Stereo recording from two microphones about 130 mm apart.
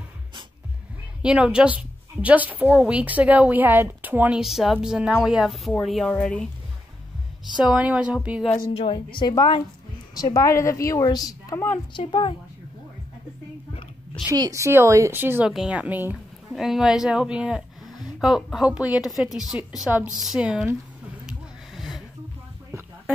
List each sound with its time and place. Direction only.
1.2 s a woman's voice: 5° right (ahead or behind)
4.4 s a woman's voice: centre (ahead or behind)
7.6 s a woman's voice: 10° right (ahead or behind)
8.9 s a woman's voice: 35° left (ahead or behind)
11.9 s a woman's voice: 40° left (ahead or behind)
14.3 s a woman's voice: 25° right (ahead or behind); by 19.9 s centre (ahead or behind)
19.9 s a woman's voice: 15° right (ahead or behind)
21.3 s music: centre (ahead or behind)